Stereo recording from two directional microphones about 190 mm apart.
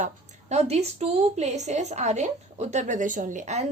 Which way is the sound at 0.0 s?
35° right (ahead or behind).